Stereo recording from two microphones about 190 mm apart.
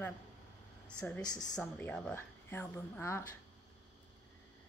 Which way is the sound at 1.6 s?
5° left (ahead or behind).